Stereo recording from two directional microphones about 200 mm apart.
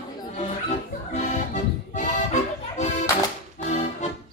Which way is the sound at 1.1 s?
35° left (ahead or behind).